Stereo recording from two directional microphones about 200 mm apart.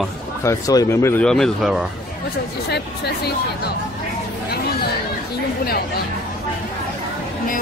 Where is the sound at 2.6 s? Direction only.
55° left (ahead or behind).